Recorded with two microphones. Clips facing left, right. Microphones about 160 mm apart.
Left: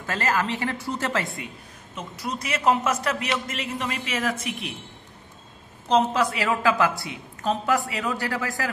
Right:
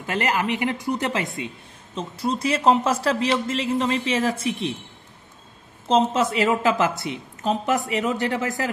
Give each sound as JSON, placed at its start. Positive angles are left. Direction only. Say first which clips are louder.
{"t": 0.0, "sound": "a woman's voice", "louder": "right 2 dB", "side_deg": -15}
{"t": 5.9, "sound": "a man's voice", "louder": "right 2 dB", "side_deg": -25}